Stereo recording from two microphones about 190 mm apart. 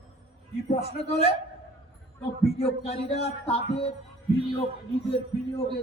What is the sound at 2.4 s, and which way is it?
A man's voice, 35° left (ahead or behind).